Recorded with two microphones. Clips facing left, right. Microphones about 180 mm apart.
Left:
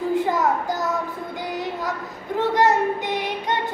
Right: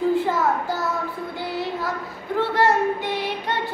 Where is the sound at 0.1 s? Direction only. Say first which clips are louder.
Even; 15° left (ahead or behind).